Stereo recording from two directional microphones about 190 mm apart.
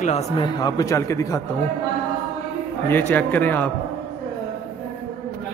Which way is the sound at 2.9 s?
10° left (ahead or behind).